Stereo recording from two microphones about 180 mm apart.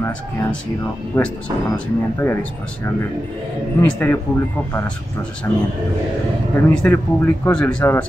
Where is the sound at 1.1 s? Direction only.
10° left (ahead or behind).